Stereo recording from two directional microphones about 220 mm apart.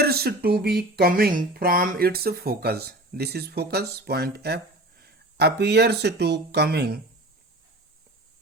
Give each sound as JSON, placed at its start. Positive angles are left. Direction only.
{"t": 0.0, "sound": "speech", "side_deg": -45}